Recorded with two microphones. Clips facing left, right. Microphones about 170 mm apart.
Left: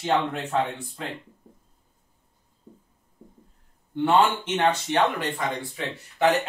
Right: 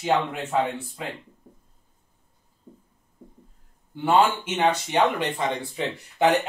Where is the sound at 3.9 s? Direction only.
5° right (ahead or behind).